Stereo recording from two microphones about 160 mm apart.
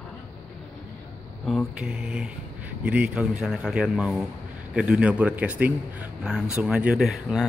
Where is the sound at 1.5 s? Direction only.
Centre (ahead or behind).